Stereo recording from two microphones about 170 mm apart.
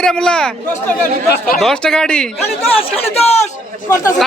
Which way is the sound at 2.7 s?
35° left (ahead or behind).